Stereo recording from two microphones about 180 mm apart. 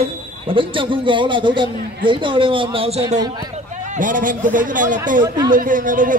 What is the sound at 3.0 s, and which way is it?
Speech, 20° right (ahead or behind).